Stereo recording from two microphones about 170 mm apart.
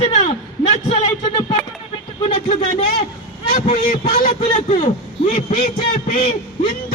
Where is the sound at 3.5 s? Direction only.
35° left (ahead or behind).